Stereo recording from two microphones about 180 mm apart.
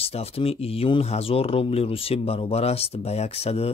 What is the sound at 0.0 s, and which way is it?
Speech, 35° left (ahead or behind).